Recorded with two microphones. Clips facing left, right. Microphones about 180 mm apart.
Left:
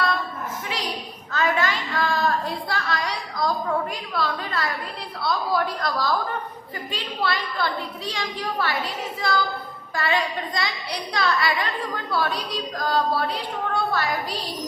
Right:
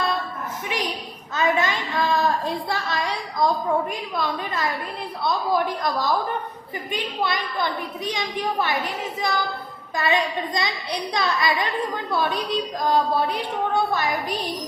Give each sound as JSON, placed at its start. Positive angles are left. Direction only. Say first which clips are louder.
{"t": 1.3, "sound": "child singing", "louder": "right 1 dB", "side_deg": -20}
{"t": 4.1, "sound": "a woman's voice", "louder": "left 2 dB", "side_deg": -20}